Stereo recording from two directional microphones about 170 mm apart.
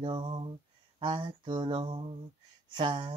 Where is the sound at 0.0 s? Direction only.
30° right (ahead or behind).